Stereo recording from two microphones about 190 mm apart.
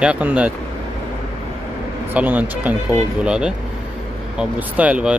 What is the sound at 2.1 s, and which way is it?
Speech, 10° right (ahead or behind).